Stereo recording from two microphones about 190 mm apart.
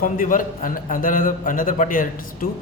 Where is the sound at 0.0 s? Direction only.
45° left (ahead or behind).